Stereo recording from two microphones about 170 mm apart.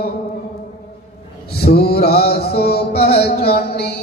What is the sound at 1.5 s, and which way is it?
Mantra, 65° left (ahead or behind).